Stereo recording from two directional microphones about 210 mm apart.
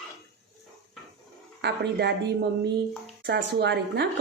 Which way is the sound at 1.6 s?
55° right (ahead or behind).